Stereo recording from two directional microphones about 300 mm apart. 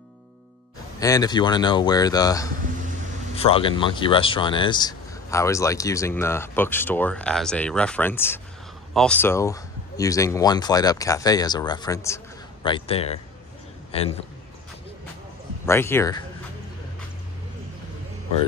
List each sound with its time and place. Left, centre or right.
0.9 s speech: centre
15.6 s speech: centre